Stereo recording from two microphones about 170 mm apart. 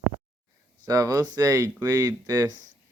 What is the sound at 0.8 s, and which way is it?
Speech, 20° right (ahead or behind).